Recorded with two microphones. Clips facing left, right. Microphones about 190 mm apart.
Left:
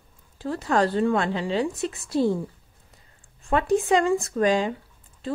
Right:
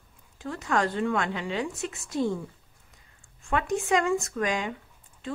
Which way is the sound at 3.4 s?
35° left (ahead or behind).